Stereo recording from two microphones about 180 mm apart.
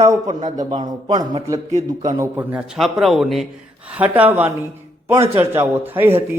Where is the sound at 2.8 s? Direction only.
Centre (ahead or behind).